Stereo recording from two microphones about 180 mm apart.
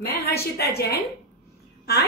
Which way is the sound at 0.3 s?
65° left (ahead or behind).